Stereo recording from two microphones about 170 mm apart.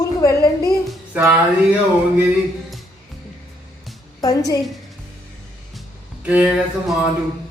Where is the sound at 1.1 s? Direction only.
10° right (ahead or behind).